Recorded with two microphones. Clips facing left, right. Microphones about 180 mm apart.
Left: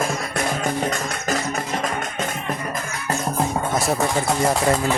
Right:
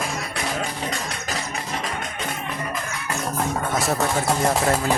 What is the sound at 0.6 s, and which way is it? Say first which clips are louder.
Music: left 6 dB; 50° left (ahead or behind).